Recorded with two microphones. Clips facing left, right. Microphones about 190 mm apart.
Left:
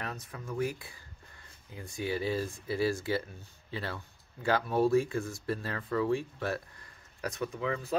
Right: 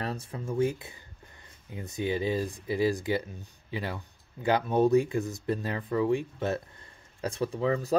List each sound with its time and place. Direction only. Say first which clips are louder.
0.0 s speech: right 6 dB; 30° right (ahead or behind)